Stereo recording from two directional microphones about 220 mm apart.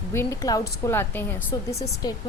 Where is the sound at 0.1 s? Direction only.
15° left (ahead or behind).